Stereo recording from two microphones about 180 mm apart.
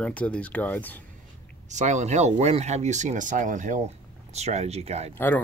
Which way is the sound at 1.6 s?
40° right (ahead or behind).